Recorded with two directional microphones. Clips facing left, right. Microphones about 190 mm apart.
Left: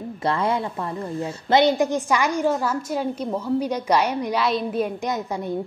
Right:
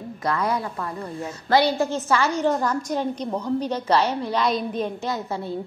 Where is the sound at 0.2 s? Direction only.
30° left (ahead or behind).